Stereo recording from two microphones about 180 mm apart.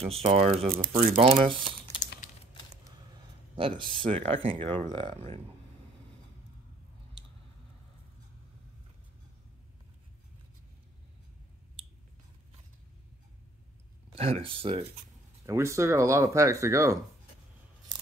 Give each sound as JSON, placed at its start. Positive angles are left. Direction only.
{"t": 0.0, "sound": "speech", "side_deg": -35}
{"t": 3.5, "sound": "speech", "side_deg": -30}
{"t": 14.1, "sound": "speech", "side_deg": -35}
{"t": 15.4, "sound": "speech", "side_deg": -15}